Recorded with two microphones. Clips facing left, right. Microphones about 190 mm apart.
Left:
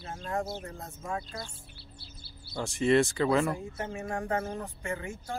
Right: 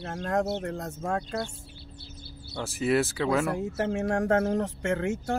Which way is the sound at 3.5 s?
75° right (ahead or behind).